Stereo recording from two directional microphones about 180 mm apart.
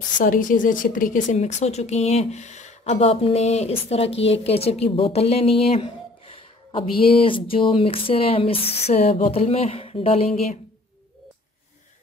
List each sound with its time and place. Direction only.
0.2 s a woman's voice: 45° left (ahead or behind)